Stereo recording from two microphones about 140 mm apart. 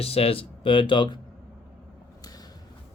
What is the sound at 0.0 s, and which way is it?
Speech, 45° left (ahead or behind).